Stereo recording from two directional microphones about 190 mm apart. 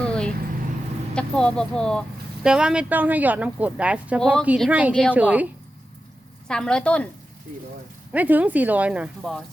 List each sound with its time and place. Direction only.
0.0 s vehicle: 5° left (ahead or behind)
1.1 s speech: 5° left (ahead or behind)
6.5 s speech: 5° left (ahead or behind)
8.1 s speech: 10° right (ahead or behind)